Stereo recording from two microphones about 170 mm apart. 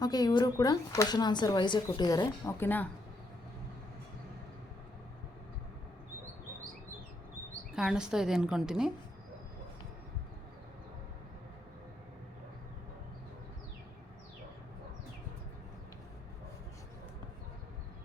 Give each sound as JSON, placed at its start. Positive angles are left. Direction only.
{"t": 0.0, "sound": "speech", "side_deg": 25}
{"t": 7.8, "sound": "a woman's voice", "side_deg": -5}